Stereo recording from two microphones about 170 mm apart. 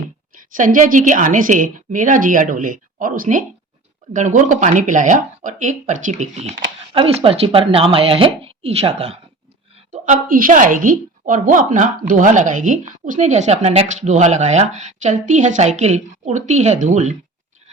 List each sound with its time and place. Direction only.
0.5 s a woman's voice: 50° right (ahead or behind)